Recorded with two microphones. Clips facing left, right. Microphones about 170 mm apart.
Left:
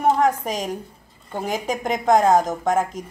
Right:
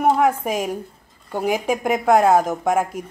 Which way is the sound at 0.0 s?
10° right (ahead or behind).